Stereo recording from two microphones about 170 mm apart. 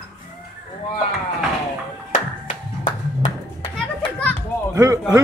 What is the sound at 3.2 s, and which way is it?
Children playing, 35° left (ahead or behind).